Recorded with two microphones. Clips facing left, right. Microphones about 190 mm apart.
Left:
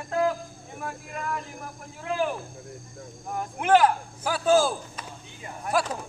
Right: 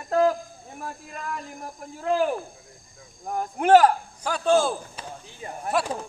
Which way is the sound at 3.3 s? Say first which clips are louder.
Right 4 dB; 40° right (ahead or behind).